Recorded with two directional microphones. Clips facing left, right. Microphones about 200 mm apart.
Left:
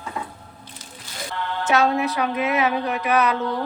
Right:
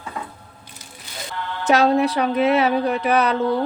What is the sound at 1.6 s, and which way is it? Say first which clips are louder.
A woman's voice: right 4 dB; 35° right (ahead or behind).